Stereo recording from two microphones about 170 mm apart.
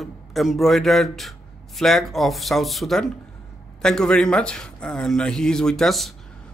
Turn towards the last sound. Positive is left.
turn(degrees=0)  # may be behind; listen again after turning